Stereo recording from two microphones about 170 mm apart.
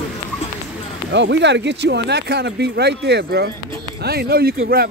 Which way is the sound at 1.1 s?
90° right.